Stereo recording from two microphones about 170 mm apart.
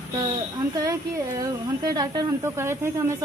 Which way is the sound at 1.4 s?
20° right (ahead or behind).